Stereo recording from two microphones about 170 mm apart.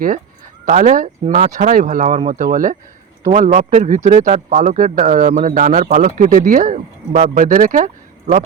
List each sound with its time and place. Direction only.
0.6 s a man's voice: 50° right (ahead or behind)